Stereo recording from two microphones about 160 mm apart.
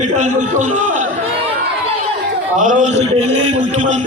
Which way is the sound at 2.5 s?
55° right (ahead or behind).